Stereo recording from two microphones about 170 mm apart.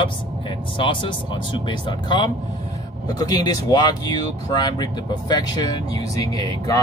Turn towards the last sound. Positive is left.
turn(degrees=20)  # may be behind; listen again after turning